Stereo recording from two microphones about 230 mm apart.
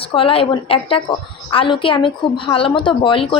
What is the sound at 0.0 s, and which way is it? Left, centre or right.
Speech, left.